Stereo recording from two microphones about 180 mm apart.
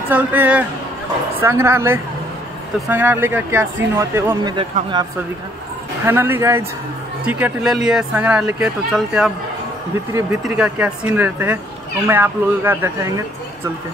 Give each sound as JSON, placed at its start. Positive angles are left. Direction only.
{"t": 0.1, "sound": "speech", "side_deg": -10}
{"t": 4.6, "sound": "speech", "side_deg": -30}
{"t": 6.0, "sound": "speech", "side_deg": -10}
{"t": 10.1, "sound": "speech", "side_deg": -15}